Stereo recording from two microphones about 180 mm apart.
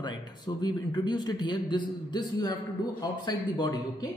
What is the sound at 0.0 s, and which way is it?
A man's voice, 25° left (ahead or behind).